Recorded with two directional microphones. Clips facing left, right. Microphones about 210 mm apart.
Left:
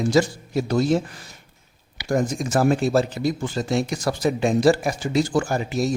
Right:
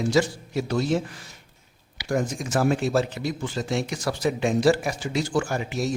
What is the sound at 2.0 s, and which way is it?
Speech, 40° left (ahead or behind).